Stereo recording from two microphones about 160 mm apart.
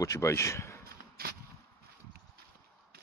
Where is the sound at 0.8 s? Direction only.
70° right (ahead or behind).